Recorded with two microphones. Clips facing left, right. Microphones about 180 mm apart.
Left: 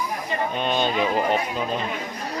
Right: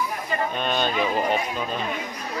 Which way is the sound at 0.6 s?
20° left (ahead or behind).